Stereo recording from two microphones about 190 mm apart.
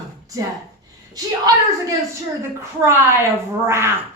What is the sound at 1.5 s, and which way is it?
A woman's voice, 20° right (ahead or behind).